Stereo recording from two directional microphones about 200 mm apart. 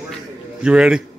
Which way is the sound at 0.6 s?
5° right (ahead or behind).